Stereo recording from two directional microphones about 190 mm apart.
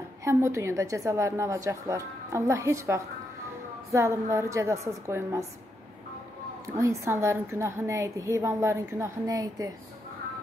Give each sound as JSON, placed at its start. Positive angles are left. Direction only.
{"t": 0.2, "sound": "a woman's voice", "side_deg": -15}
{"t": 6.8, "sound": "a woman's voice", "side_deg": -15}